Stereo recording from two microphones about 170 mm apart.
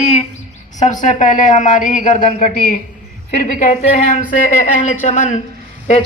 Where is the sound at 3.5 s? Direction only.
40° left (ahead or behind).